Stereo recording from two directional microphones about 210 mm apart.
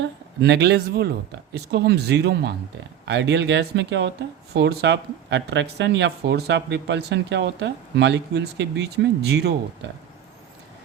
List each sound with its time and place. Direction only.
0.0 s speech: 55° right (ahead or behind)